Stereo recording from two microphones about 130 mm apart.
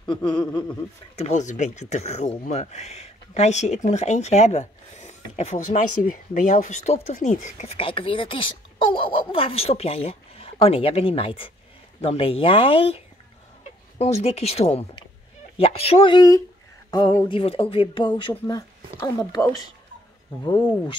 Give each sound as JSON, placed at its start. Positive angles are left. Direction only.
{"t": 0.0, "sound": "a sound", "side_deg": 35}
{"t": 0.5, "sound": "speech", "side_deg": 10}
{"t": 1.1, "sound": "speech", "side_deg": 60}
{"t": 16.2, "sound": "speech", "side_deg": 25}
{"t": 17.3, "sound": "speech", "side_deg": 45}
{"t": 18.9, "sound": "speech", "side_deg": 25}